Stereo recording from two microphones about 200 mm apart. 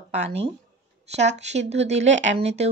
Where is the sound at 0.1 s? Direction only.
35° right (ahead or behind).